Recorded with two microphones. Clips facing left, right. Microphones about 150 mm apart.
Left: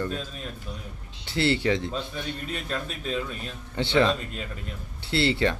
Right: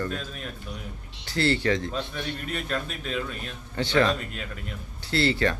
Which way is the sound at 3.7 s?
20° left (ahead or behind).